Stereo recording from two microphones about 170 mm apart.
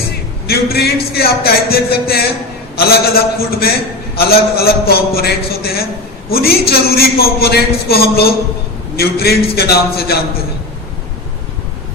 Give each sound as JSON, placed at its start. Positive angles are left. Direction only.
{"t": 0.4, "sound": "a man's voice", "side_deg": 65}